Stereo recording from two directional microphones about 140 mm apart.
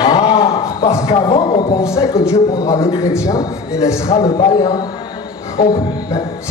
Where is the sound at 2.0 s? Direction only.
20° left (ahead or behind).